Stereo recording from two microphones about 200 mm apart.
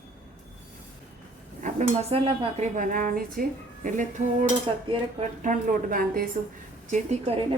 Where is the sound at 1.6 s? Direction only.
30° right (ahead or behind).